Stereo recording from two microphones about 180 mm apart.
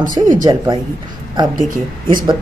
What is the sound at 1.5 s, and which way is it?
Speech, 50° right (ahead or behind).